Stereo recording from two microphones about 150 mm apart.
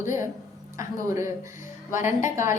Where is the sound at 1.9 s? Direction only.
55° left (ahead or behind).